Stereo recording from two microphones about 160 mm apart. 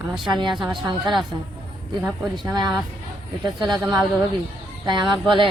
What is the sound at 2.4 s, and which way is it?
A woman's voice, 25° right (ahead or behind).